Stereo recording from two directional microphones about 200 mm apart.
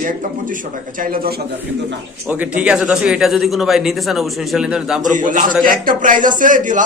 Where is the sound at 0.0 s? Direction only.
45° right (ahead or behind).